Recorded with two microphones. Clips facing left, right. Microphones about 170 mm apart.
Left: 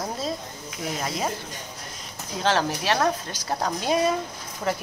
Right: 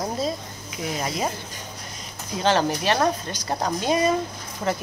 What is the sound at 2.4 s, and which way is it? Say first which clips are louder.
Speech: right 2 dB; centre (ahead or behind).